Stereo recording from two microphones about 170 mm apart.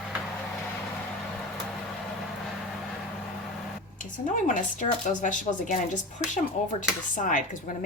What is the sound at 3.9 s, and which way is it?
Speech, 50° left (ahead or behind).